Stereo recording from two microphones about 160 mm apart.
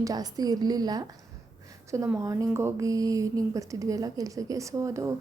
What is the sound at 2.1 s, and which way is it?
Speech, 15° right (ahead or behind).